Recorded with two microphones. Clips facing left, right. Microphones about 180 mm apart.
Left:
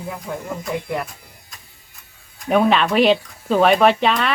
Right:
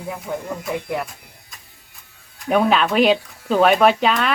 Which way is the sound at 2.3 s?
Centre (ahead or behind).